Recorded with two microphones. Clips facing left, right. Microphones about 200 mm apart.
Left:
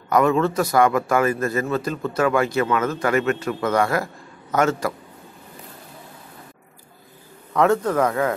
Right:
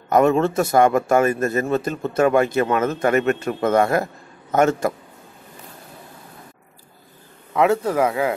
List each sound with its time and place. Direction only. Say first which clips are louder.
0.1 s a man's voice: right 2 dB; 25° right (ahead or behind)
2.6 s speech: right 2 dB; 35° right (ahead or behind)
2.9 s a man's voice: right 2 dB; 25° right (ahead or behind)
7.5 s speech: even; 10° right (ahead or behind)